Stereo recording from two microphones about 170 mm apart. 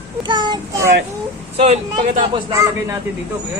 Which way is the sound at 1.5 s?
40° right (ahead or behind).